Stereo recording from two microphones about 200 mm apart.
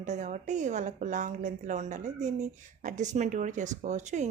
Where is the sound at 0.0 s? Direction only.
35° right (ahead or behind).